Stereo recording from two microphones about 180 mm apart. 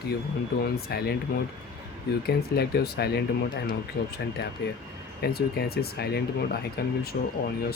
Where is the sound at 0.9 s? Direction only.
60° left (ahead or behind).